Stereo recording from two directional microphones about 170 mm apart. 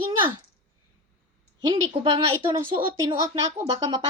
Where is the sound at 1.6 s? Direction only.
25° right (ahead or behind).